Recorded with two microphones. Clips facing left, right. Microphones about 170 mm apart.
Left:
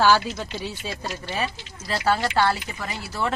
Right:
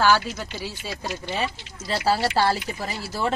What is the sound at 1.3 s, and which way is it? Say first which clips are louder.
Speech: even; 25° right (ahead or behind).